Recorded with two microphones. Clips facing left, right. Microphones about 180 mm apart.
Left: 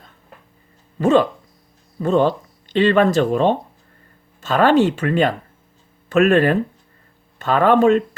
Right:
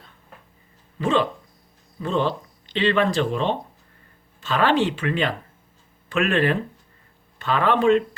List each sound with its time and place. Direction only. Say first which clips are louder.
0.9 s speech: left 7 dB; 45° left (ahead or behind)